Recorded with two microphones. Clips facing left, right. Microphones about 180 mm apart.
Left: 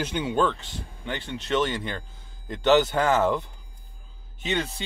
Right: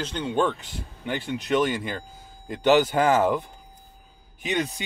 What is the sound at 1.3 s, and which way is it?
Speech, 15° right (ahead or behind).